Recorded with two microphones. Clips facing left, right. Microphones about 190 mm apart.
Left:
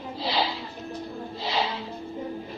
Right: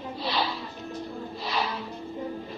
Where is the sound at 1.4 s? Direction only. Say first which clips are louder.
Left 2 dB; 25° left (ahead or behind).